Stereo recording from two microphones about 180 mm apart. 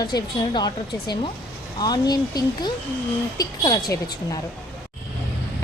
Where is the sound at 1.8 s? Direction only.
20° left (ahead or behind).